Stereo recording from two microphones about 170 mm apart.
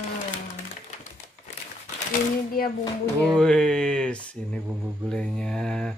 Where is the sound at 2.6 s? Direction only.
60° left (ahead or behind).